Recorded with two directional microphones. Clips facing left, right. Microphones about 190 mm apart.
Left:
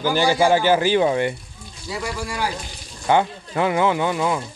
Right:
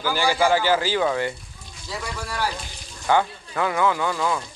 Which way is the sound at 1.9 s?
10° left (ahead or behind).